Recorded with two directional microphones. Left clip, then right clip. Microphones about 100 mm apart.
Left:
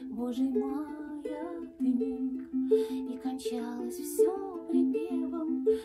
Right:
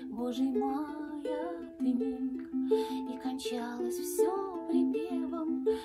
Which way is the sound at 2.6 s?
20° right (ahead or behind).